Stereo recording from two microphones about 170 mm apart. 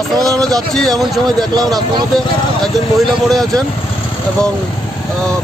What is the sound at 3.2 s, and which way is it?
Speech, centre (ahead or behind).